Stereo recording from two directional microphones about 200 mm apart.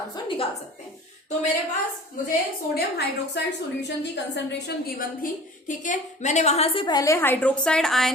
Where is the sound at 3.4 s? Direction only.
55° left (ahead or behind).